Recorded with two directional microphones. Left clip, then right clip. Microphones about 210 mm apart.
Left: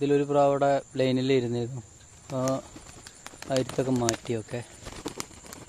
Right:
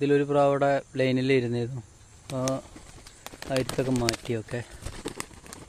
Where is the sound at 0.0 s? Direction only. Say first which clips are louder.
Even; 5° right (ahead or behind).